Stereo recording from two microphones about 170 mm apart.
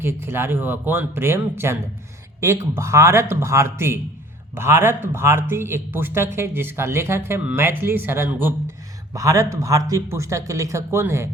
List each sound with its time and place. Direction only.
0.0 s speech: 15° right (ahead or behind)